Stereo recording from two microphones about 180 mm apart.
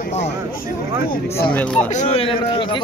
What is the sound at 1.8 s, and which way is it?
Speech, 35° left (ahead or behind).